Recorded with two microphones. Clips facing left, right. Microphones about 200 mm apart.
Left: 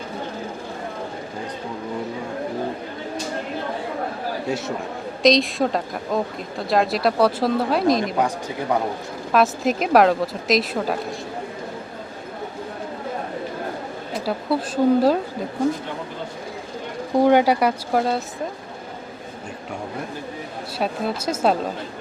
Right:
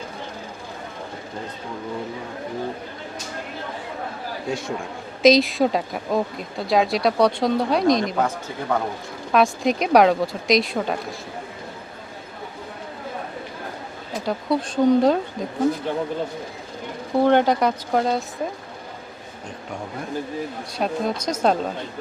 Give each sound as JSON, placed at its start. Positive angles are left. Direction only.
{"t": 4.4, "sound": "speech", "side_deg": 5}
{"t": 8.7, "sound": "speech", "side_deg": 15}
{"t": 9.3, "sound": "speech", "side_deg": 0}
{"t": 14.3, "sound": "speech", "side_deg": 5}
{"t": 17.2, "sound": "speech", "side_deg": 10}
{"t": 20.7, "sound": "speech", "side_deg": 5}